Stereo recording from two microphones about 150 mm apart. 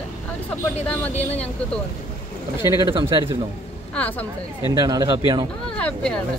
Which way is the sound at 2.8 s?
30° right (ahead or behind).